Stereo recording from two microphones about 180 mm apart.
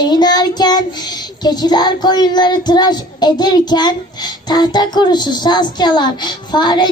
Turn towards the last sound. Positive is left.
turn(degrees=25)  # may be behind; listen again after turning